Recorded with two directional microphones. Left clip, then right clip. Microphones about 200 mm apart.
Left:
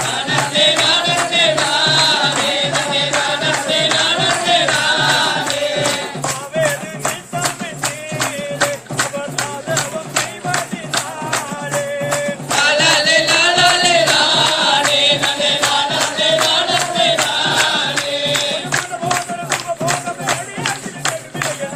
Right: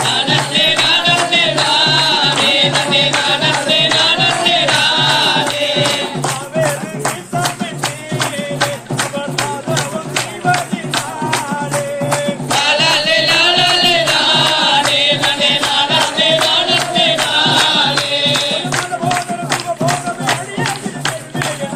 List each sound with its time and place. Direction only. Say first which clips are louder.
0.3 s music: right 1 dB; 50° left (ahead or behind)
12.5 s music: even; 60° left (ahead or behind)